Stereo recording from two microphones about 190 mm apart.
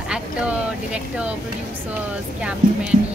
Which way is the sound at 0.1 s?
5° right (ahead or behind).